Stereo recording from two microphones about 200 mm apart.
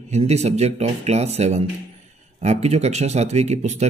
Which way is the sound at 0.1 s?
35° right (ahead or behind).